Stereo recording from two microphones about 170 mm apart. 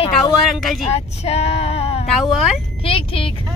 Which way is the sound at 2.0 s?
Centre (ahead or behind).